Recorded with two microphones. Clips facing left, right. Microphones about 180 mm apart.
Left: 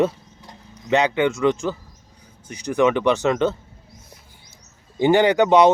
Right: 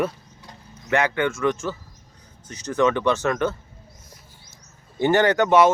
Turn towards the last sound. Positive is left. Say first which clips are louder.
# left 2 dB
turn(degrees=20)  # may be behind; listen again after turning